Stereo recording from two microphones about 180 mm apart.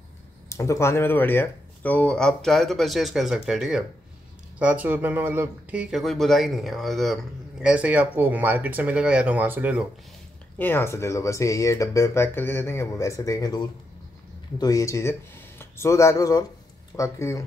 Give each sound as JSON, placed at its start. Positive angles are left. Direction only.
{"t": 0.5, "sound": "speech", "side_deg": 15}
{"t": 10.6, "sound": "speech", "side_deg": 15}